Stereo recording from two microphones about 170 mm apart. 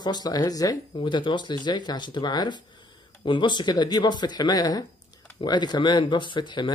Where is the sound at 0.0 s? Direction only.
25° left (ahead or behind).